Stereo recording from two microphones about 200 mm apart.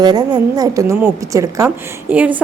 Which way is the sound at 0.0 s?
20° right (ahead or behind).